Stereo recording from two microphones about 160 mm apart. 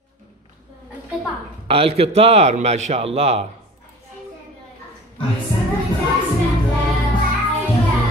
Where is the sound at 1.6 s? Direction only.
35° right (ahead or behind).